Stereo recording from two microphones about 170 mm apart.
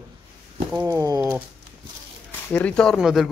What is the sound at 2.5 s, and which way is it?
Speech, 5° left (ahead or behind).